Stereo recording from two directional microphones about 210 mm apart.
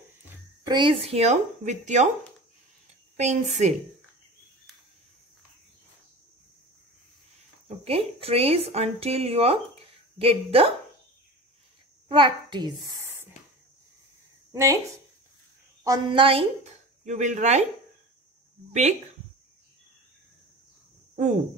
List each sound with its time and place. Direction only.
0.7 s a woman's voice: 20° right (ahead or behind)
3.2 s a woman's voice: 35° right (ahead or behind)
7.6 s a woman's voice: 30° right (ahead or behind)
12.1 s a woman's voice: 20° right (ahead or behind)
14.5 s a woman's voice: 15° right (ahead or behind)
15.8 s a woman's voice: 20° right (ahead or behind)
18.7 s a woman's voice: 30° right (ahead or behind)